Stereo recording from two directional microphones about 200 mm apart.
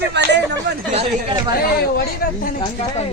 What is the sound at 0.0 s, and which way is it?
Chatter, 60° right (ahead or behind).